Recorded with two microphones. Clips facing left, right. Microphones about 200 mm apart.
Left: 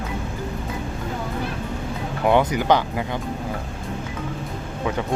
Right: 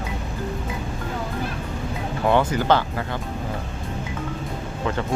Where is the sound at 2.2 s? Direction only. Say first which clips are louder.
Left 1 dB; 15° left (ahead or behind).